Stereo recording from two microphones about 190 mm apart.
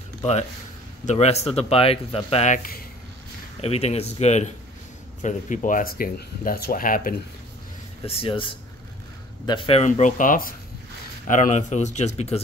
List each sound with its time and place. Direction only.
0.2 s speech: 35° left (ahead or behind)
3.6 s speech: 35° left (ahead or behind)
8.0 s speech: 30° left (ahead or behind)